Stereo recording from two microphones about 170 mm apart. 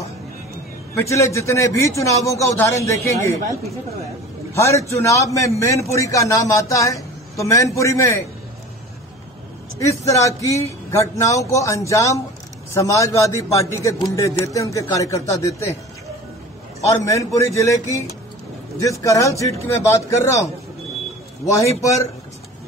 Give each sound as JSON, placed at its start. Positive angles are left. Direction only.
{"t": 0.9, "sound": "a man's voice", "side_deg": 15}
{"t": 4.6, "sound": "a man's voice", "side_deg": 15}
{"t": 9.8, "sound": "a man's voice", "side_deg": 20}
{"t": 17.0, "sound": "a man's voice", "side_deg": 15}